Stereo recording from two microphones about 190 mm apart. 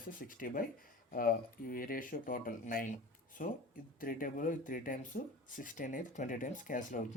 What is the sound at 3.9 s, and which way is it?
Speech, 45° left (ahead or behind).